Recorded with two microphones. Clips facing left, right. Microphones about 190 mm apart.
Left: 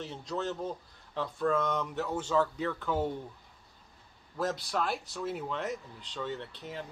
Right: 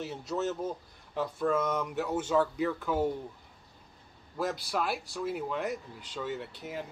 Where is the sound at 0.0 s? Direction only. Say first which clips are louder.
Right 3 dB; 5° right (ahead or behind).